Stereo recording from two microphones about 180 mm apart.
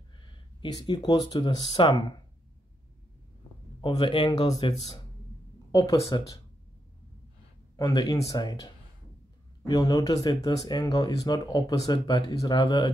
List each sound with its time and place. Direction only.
0.6 s speech: 25° left (ahead or behind)
3.8 s speech: 25° left (ahead or behind)
7.7 s speech: 20° left (ahead or behind)
9.7 s speech: 20° left (ahead or behind)